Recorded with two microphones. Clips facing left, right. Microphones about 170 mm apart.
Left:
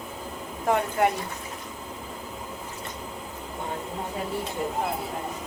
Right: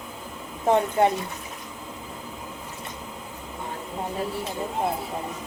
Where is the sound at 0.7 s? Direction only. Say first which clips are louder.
Right 3 dB; 25° right (ahead or behind).